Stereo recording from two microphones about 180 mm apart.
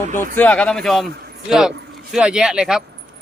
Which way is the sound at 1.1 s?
60° right (ahead or behind).